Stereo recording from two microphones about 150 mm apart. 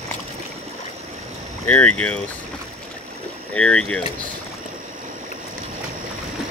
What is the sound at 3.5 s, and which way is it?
Speech, 5° left (ahead or behind).